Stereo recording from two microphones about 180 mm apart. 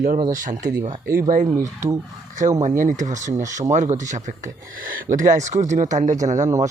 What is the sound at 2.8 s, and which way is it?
Speech, 45° right (ahead or behind).